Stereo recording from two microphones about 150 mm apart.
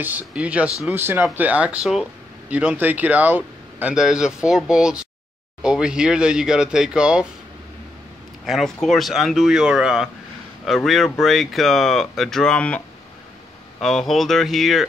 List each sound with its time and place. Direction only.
0.0 s speech: 10° right (ahead or behind)
8.5 s speech: centre (ahead or behind)